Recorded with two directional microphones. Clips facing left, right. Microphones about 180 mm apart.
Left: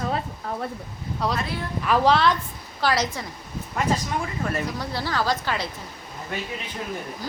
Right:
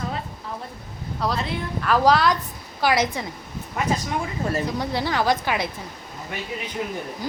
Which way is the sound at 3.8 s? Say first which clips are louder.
Even; 5° right (ahead or behind).